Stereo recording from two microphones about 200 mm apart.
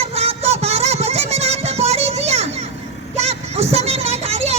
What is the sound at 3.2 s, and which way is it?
Vehicle, 30° right (ahead or behind).